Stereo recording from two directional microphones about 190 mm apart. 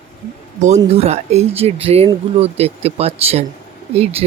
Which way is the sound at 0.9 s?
35° right (ahead or behind).